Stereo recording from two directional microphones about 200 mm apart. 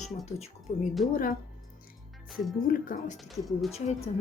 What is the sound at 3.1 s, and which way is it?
Speech, centre (ahead or behind).